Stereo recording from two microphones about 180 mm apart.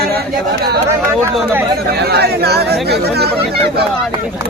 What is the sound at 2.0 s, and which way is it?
Speech, 65° right (ahead or behind).